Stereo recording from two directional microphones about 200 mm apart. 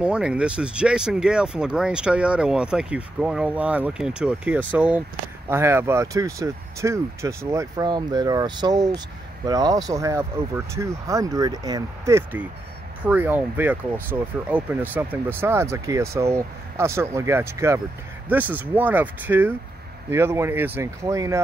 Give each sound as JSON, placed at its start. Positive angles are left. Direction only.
{"t": 0.0, "sound": "speech", "side_deg": -5}